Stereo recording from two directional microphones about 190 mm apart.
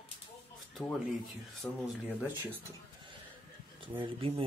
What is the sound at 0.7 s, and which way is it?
Speech, centre (ahead or behind).